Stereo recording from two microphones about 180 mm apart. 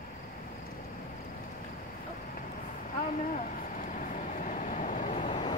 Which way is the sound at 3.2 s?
45° left (ahead or behind).